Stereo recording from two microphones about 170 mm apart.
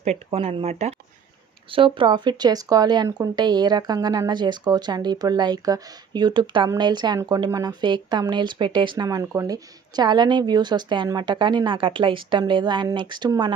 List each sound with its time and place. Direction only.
0.0 s speech: 35° right (ahead or behind)